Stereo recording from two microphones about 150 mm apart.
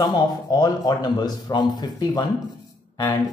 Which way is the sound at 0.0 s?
25° left (ahead or behind).